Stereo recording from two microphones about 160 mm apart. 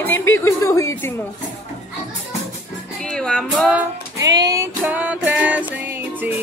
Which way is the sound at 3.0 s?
5° left (ahead or behind).